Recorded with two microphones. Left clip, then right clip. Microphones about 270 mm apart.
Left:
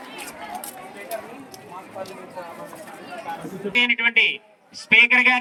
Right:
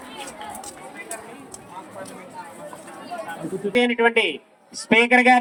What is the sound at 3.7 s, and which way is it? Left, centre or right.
Speech, right.